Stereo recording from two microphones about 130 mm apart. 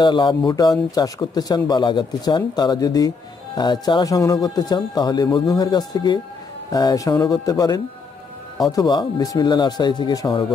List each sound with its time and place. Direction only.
0.0 s speech: 35° left (ahead or behind)